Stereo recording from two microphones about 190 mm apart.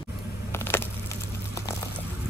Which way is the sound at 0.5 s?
10° left (ahead or behind).